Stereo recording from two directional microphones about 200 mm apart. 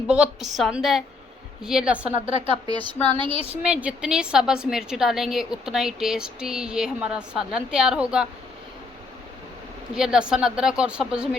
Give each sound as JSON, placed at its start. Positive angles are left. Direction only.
{"t": 0.1, "sound": "a woman's voice", "side_deg": -5}
{"t": 2.3, "sound": "a woman's voice", "side_deg": 25}
{"t": 3.2, "sound": "a woman's voice", "side_deg": -30}
{"t": 3.6, "sound": "a woman's voice", "side_deg": -5}
{"t": 9.9, "sound": "a woman's voice", "side_deg": -5}